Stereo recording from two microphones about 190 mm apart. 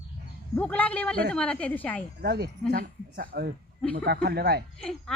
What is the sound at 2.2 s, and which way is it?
Speech, 60° right (ahead or behind).